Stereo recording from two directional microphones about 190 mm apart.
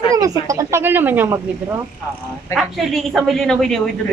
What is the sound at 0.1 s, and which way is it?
Speech, 20° right (ahead or behind).